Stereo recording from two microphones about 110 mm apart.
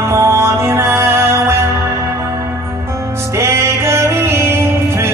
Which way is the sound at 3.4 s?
25° right (ahead or behind).